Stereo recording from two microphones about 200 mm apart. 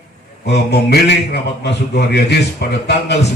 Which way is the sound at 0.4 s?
55° left (ahead or behind).